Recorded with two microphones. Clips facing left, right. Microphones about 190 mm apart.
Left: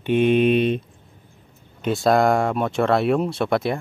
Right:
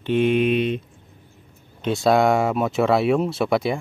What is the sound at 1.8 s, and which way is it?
Speech, centre (ahead or behind).